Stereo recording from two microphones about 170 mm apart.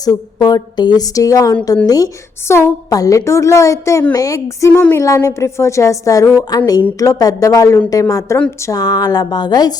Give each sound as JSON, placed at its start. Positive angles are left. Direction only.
{"t": 0.0, "sound": "a woman's voice", "side_deg": 20}